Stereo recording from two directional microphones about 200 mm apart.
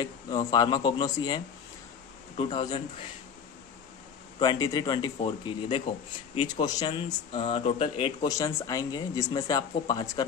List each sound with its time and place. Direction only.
0.0 s speech: 20° left (ahead or behind)
4.4 s speech: 20° left (ahead or behind)